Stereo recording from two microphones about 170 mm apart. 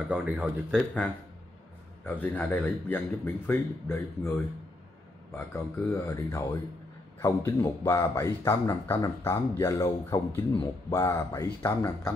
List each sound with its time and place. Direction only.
0.1 s speech: 10° right (ahead or behind)
2.0 s speech: 10° left (ahead or behind)